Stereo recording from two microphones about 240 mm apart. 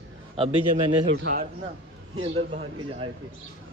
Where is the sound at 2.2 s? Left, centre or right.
Right.